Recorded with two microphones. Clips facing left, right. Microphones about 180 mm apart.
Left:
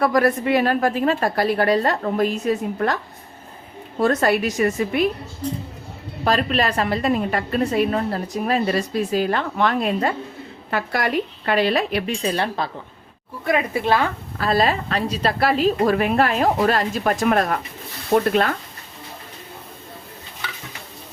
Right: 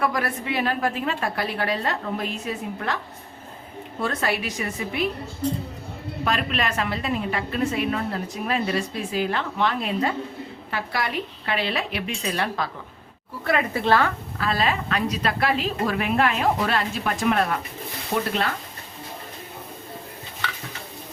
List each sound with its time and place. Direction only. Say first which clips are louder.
0.0 s a woman's voice: left 8 dB; 40° left (ahead or behind)
4.0 s a woman's voice: left 8 dB; 45° left (ahead or behind)
6.2 s a woman's voice: left 6 dB; 35° left (ahead or behind)
12.3 s speech: even; 30° left (ahead or behind)
13.4 s speech: left 2 dB; 15° left (ahead or behind)
14.3 s a woman's voice: left 5 dB; 40° left (ahead or behind)